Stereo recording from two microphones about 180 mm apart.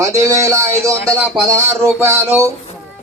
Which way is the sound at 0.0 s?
15° right (ahead or behind).